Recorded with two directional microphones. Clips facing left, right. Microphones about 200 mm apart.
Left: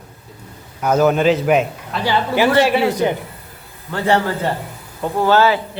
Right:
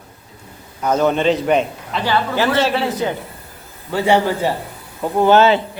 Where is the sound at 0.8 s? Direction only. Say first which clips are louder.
Left 2 dB; 10° left (ahead or behind).